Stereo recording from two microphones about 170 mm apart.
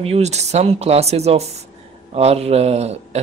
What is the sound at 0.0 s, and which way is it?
Speech, 40° right (ahead or behind).